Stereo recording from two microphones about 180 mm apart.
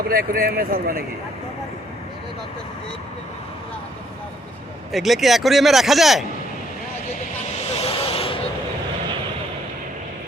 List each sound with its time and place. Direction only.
0.1 s speech: 55° right (ahead or behind)
4.9 s a man's voice: centre (ahead or behind)
7.8 s a sound: 30° left (ahead or behind)